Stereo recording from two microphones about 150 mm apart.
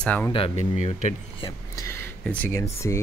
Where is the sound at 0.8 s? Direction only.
50° left (ahead or behind).